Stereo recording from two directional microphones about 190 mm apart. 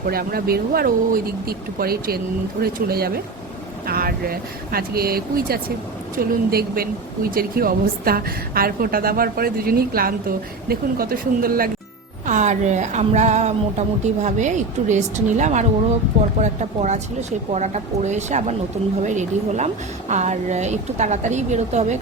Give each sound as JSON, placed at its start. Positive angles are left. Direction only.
{"t": 0.0, "sound": "speech", "side_deg": -50}
{"t": 12.2, "sound": "speech", "side_deg": -40}